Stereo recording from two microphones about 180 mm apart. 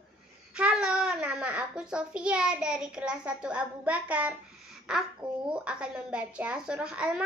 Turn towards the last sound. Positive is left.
turn(degrees=-5)  # may be behind; listen again after turning